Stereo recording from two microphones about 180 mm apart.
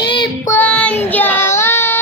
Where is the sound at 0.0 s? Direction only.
25° left (ahead or behind).